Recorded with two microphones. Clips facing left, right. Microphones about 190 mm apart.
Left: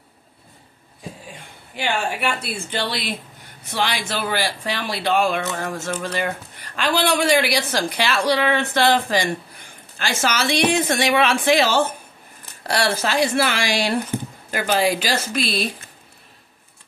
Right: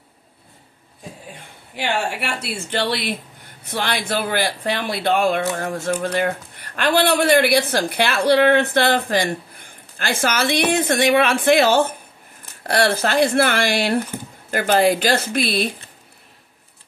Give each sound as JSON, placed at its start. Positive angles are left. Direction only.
{"t": 1.8, "sound": "a man's voice", "side_deg": -65}